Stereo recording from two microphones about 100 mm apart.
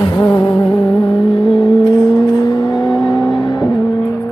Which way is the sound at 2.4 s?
40° left (ahead or behind).